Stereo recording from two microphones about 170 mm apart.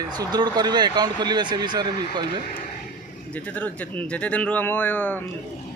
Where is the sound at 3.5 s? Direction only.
10° left (ahead or behind).